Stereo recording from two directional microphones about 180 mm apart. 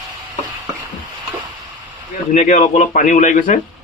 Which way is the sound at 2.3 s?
45° left (ahead or behind).